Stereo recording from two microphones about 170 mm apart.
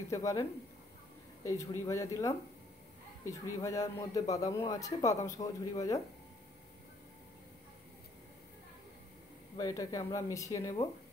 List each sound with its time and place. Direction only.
0.1 s a man's voice: 20° left (ahead or behind)
9.6 s a man's voice: 20° left (ahead or behind)